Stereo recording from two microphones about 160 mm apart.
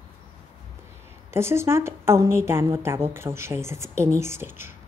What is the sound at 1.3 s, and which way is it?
A woman's voice, 15° right (ahead or behind).